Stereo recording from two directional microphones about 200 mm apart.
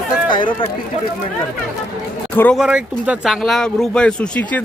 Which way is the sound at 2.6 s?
5° right (ahead or behind).